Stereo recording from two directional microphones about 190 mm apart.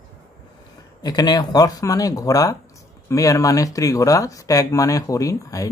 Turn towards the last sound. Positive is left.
turn(degrees=15)  # may be behind; listen again after turning